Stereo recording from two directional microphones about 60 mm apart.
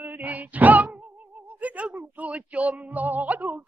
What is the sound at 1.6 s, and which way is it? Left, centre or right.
Speech, right.